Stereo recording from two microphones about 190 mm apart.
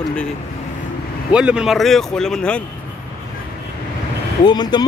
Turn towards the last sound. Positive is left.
turn(degrees=20)  # may be behind; listen again after turning